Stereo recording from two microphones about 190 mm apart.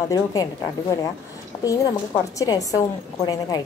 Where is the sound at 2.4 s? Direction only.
20° left (ahead or behind).